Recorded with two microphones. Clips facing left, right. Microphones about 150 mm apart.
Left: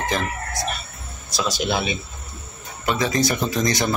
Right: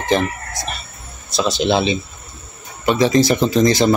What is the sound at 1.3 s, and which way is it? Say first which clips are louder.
Speech: right 6 dB; 25° right (ahead or behind).